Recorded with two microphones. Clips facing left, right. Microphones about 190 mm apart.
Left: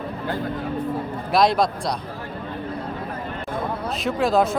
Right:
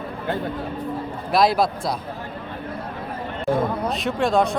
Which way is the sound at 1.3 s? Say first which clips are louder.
Even; centre (ahead or behind).